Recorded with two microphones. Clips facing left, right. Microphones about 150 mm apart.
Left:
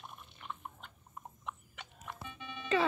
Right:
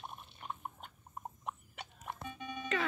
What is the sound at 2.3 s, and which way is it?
Music, 40° right (ahead or behind).